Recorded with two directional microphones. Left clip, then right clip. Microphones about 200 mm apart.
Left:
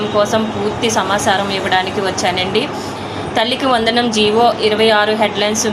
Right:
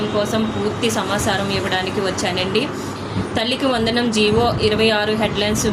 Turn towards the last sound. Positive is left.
turn(degrees=-15)  # may be behind; listen again after turning